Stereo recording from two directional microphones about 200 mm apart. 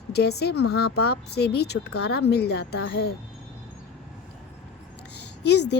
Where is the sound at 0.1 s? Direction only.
55° left (ahead or behind).